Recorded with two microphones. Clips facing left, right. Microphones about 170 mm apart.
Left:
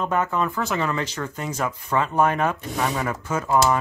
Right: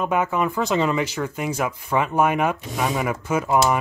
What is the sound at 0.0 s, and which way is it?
Speech, 10° right (ahead or behind).